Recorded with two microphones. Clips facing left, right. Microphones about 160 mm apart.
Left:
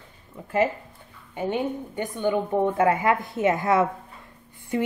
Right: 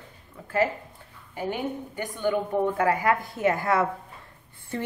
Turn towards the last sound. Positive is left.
turn(degrees=15)  # may be behind; listen again after turning